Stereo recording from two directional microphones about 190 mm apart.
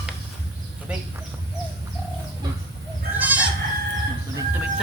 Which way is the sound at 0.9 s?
5° right (ahead or behind).